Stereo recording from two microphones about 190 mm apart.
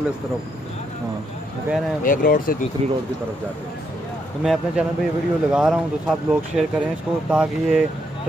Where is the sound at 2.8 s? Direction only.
35° right (ahead or behind).